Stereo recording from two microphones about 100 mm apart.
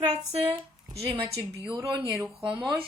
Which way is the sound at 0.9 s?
75° right (ahead or behind).